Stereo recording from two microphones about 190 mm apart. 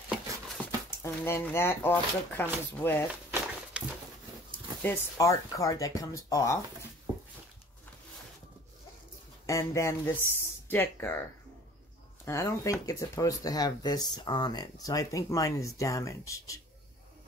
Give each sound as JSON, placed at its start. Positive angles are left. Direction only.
{"t": 0.8, "sound": "speech", "side_deg": 15}
{"t": 3.8, "sound": "a sound", "side_deg": -5}
{"t": 4.8, "sound": "speech", "side_deg": 15}
{"t": 9.5, "sound": "speech", "side_deg": 15}
{"t": 12.3, "sound": "speech", "side_deg": 15}